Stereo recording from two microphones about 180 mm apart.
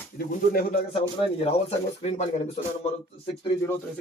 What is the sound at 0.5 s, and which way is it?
Speech, 60° left (ahead or behind).